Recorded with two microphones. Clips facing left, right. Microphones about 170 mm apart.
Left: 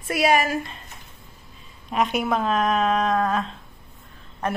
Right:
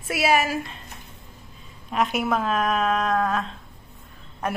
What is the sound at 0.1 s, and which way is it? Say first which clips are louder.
Speech: left 1 dB; 5° right (ahead or behind).